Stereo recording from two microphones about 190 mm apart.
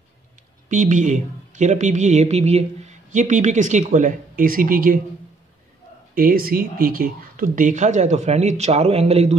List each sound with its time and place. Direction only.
0.7 s a woman's voice: 40° right (ahead or behind)
6.1 s a woman's voice: 50° right (ahead or behind); by 9.4 s 35° right (ahead or behind)